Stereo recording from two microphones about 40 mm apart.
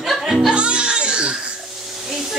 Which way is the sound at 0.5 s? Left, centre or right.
Right.